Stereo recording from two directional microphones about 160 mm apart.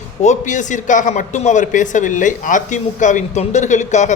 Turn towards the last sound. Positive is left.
turn(degrees=50)  # may be behind; listen again after turning